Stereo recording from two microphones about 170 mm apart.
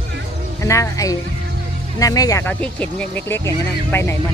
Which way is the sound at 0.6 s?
20° left (ahead or behind).